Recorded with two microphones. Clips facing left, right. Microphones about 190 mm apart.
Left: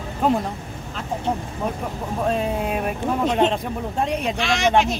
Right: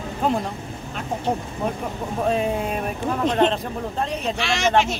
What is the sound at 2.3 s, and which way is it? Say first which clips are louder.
Speech: even; centre (ahead or behind).